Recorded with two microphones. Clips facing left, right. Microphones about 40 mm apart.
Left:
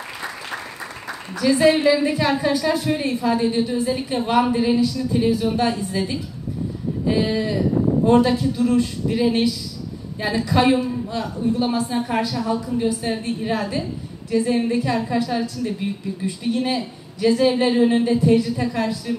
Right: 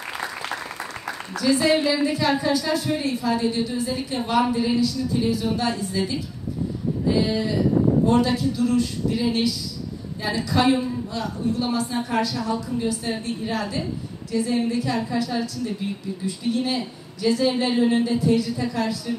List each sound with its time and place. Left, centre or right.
1.3 s a woman's voice: left
7.2 s a woman's voice: left